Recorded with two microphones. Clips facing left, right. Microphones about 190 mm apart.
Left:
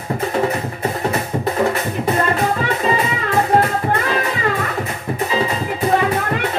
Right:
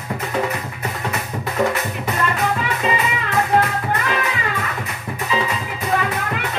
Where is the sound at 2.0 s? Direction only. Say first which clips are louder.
Left 5 dB; 30° left (ahead or behind).